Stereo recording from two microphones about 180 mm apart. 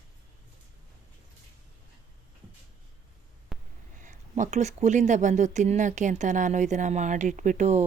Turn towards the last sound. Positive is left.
turn(degrees=-40)  # may be behind; listen again after turning